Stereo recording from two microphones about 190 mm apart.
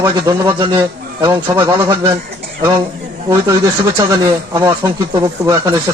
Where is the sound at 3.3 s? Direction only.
15° right (ahead or behind).